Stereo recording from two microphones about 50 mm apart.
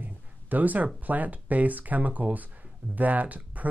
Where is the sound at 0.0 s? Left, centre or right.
Right.